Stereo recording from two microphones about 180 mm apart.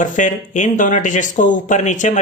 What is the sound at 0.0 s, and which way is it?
Speech, 45° left (ahead or behind).